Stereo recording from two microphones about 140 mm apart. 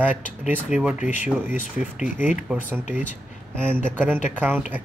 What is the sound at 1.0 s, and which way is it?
Speech, 65° left (ahead or behind).